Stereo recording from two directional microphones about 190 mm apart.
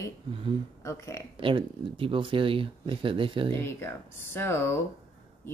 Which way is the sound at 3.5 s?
10° left (ahead or behind).